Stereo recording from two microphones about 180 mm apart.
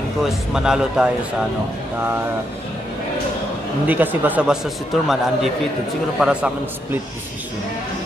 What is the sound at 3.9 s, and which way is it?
Speech, 10° right (ahead or behind).